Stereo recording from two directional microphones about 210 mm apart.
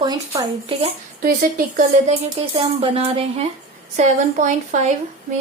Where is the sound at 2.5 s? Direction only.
25° right (ahead or behind).